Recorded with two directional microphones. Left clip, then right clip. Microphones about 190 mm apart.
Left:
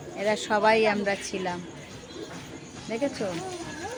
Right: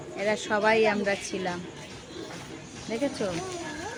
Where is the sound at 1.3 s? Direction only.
5° left (ahead or behind).